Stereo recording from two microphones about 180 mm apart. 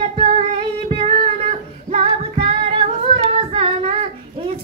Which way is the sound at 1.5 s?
35° right (ahead or behind).